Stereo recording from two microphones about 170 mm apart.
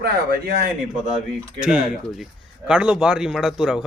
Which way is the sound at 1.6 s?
5° right (ahead or behind).